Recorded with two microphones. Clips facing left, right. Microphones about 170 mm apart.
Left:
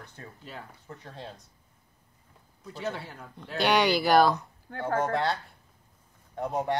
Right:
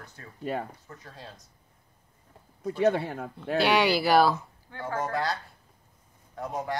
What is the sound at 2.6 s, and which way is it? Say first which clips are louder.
Speech: right 11 dB; 60° right (ahead or behind).